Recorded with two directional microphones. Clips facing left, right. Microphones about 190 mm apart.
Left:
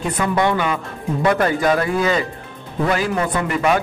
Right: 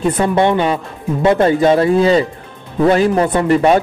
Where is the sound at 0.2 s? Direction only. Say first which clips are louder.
Right 3 dB; 25° right (ahead or behind).